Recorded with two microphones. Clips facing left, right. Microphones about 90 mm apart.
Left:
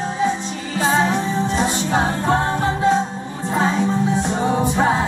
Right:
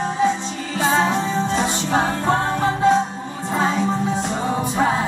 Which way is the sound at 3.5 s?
20° left (ahead or behind).